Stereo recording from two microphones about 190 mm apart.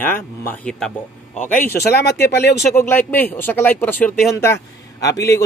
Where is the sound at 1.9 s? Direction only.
60° left (ahead or behind).